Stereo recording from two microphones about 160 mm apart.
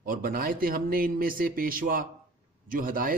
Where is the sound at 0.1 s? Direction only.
65° right (ahead or behind).